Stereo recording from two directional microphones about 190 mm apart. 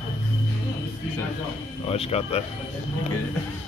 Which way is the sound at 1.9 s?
30° left (ahead or behind).